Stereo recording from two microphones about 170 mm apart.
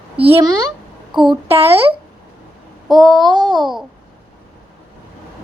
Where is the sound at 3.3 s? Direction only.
25° right (ahead or behind).